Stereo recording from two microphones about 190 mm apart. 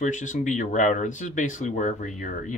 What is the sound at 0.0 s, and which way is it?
Speech, 40° left (ahead or behind).